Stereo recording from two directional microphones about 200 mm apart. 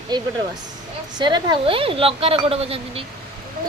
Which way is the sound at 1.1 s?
20° right (ahead or behind).